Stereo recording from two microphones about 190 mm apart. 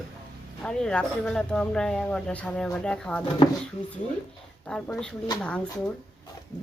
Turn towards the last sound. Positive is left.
turn(degrees=5)  # may be behind; listen again after turning